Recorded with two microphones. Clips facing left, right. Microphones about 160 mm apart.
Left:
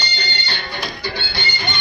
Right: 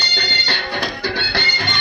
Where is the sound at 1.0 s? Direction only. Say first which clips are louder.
Right 4 dB; 90° right.